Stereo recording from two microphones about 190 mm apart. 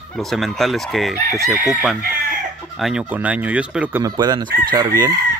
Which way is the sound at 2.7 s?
5° right (ahead or behind).